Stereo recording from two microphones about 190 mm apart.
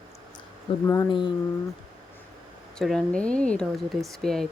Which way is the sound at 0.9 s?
20° left (ahead or behind).